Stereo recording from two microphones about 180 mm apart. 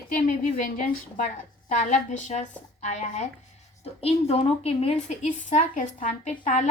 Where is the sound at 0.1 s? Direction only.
45° left (ahead or behind).